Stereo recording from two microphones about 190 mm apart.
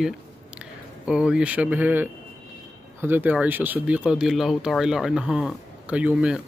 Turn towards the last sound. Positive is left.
turn(degrees=-5)  # may be behind; listen again after turning